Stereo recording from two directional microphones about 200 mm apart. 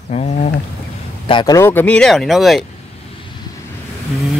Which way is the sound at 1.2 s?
20° left (ahead or behind).